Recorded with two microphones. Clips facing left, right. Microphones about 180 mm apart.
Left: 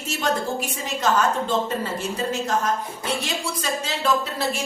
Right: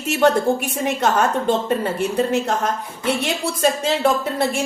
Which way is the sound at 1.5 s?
60° right (ahead or behind).